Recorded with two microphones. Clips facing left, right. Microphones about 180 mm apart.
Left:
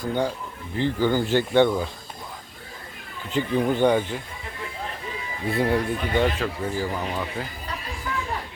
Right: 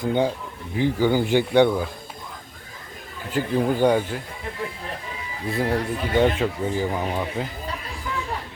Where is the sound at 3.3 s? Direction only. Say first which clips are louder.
Right 1 dB; 5° right (ahead or behind).